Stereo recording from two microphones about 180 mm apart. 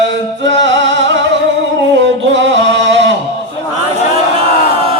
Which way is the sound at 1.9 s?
80° right.